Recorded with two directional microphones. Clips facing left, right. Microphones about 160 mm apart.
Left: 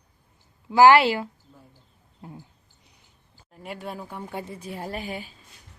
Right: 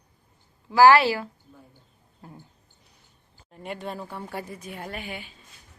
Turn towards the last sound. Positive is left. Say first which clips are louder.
# left 3 dB
turn(degrees=35)  # may be behind; listen again after turning